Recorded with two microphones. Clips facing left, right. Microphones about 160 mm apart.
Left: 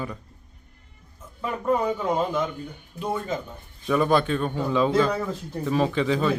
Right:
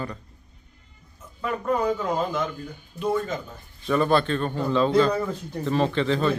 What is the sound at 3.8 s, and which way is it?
A man's voice, 10° left (ahead or behind).